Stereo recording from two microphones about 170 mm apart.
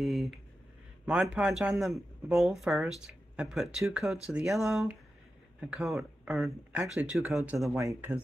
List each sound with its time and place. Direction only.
0.0 s speech: centre (ahead or behind)
7.5 s speech: 20° right (ahead or behind)